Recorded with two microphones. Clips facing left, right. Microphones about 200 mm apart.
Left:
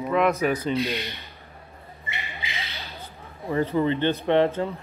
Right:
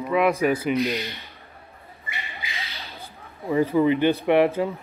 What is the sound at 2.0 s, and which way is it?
Squawk, 30° left (ahead or behind).